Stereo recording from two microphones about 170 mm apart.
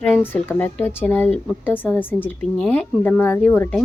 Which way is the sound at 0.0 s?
5° left (ahead or behind).